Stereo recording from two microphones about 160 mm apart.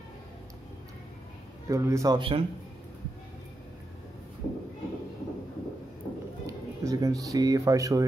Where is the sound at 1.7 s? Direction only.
20° right (ahead or behind).